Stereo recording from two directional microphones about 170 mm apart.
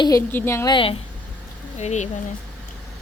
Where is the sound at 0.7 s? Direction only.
30° left (ahead or behind).